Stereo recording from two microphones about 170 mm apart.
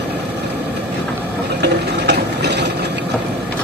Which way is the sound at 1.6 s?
80° right.